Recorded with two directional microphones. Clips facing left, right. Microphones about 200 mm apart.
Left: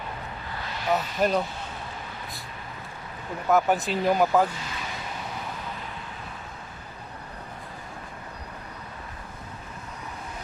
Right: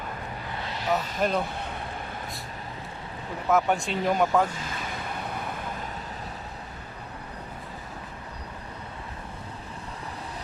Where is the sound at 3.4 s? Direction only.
Centre (ahead or behind).